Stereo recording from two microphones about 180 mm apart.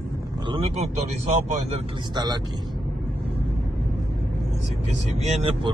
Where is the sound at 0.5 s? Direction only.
35° right (ahead or behind).